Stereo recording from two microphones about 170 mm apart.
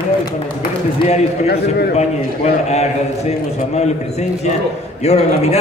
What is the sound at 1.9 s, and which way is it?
Speech, 40° left (ahead or behind).